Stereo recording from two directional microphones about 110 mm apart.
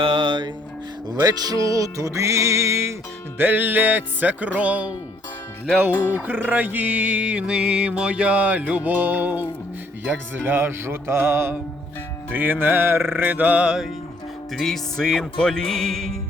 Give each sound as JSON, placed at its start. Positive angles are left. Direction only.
{"t": 0.0, "sound": "music", "side_deg": -50}
{"t": 1.1, "sound": "music", "side_deg": -35}
{"t": 6.1, "sound": "music", "side_deg": -15}
{"t": 14.5, "sound": "music", "side_deg": 5}